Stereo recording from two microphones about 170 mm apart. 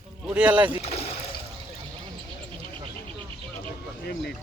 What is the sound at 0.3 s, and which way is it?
Speech, 10° right (ahead or behind).